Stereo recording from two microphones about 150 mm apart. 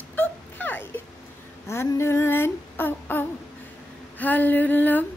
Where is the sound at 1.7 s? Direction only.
20° left (ahead or behind).